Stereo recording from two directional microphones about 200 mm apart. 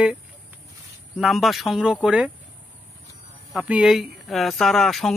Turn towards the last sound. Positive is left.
turn(degrees=0)  # may be behind; listen again after turning